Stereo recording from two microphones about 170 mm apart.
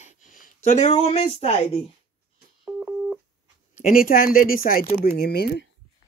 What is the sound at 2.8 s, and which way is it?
Telephone dialing, 10° right (ahead or behind).